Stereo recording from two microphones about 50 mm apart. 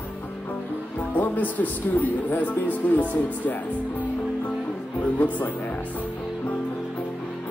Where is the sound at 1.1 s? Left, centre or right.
Left.